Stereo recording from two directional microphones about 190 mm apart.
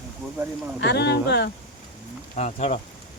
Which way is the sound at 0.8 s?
65° left (ahead or behind).